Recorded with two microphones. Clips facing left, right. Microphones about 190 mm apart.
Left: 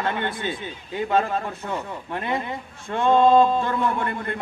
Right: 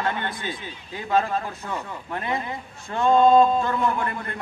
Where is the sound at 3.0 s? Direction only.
Centre (ahead or behind).